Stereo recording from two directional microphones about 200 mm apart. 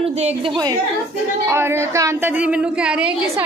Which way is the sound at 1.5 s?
15° right (ahead or behind).